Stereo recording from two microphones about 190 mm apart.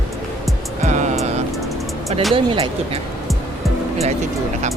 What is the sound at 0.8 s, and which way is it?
Music, 40° right (ahead or behind).